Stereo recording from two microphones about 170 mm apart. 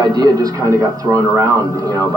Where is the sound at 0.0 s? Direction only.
25° right (ahead or behind).